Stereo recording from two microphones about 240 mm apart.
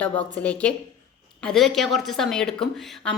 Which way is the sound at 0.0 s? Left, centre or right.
Centre.